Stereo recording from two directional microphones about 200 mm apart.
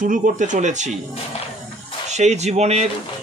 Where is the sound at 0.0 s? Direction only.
40° right (ahead or behind).